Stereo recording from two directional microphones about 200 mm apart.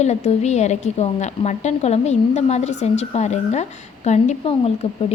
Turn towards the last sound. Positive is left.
turn(degrees=30)  # may be behind; listen again after turning